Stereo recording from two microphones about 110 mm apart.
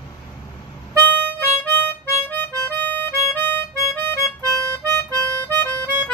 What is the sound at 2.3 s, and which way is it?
Music, 15° left (ahead or behind).